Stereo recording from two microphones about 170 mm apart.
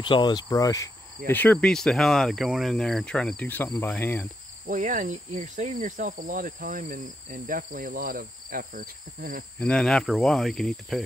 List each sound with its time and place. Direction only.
0.0 s cricket: 25° left (ahead or behind); by 4.3 s 10° left (ahead or behind)
4.6 s insect: 50° right (ahead or behind)
9.6 s speech: 5° left (ahead or behind)